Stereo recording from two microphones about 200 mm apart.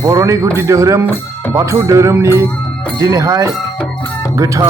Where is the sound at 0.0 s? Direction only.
15° right (ahead or behind).